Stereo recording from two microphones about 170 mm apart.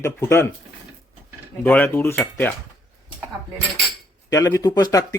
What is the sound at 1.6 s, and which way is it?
Speech, 10° left (ahead or behind).